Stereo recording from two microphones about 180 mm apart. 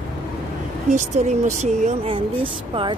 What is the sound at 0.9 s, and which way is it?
Speech, 40° right (ahead or behind).